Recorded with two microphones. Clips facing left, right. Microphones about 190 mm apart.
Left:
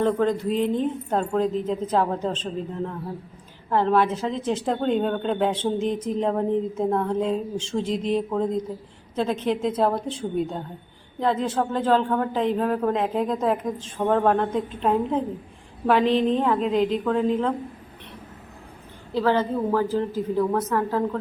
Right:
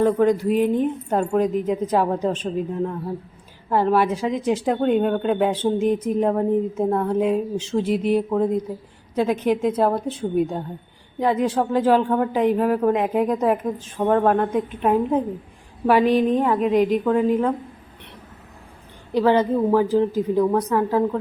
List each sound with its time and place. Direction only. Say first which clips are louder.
0.0 s a woman's voice: right 4 dB; 10° right (ahead or behind)
10.1 s a woman's voice: right 4 dB; 60° right (ahead or behind)
11.2 s a woman's voice: right 3 dB; 10° right (ahead or behind)
19.1 s a woman's voice: right 4 dB; 15° right (ahead or behind)